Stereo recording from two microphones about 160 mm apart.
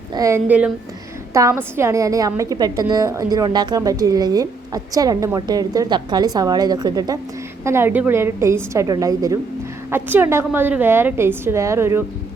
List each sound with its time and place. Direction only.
0.1 s a woman's voice: 20° right (ahead or behind)
1.3 s a woman's voice: 20° right (ahead or behind)